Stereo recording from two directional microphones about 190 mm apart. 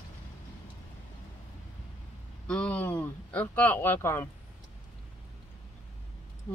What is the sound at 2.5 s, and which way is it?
Speech, 5° left (ahead or behind).